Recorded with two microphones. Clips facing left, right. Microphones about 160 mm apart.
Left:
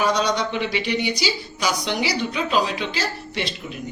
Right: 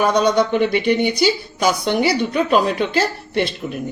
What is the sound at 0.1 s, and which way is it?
A woman's voice, 55° right (ahead or behind).